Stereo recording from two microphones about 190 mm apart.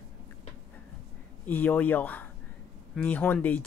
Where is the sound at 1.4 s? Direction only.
10° left (ahead or behind).